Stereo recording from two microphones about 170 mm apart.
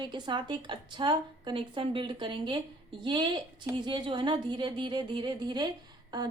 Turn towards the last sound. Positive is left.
turn(degrees=-25)  # may be behind; listen again after turning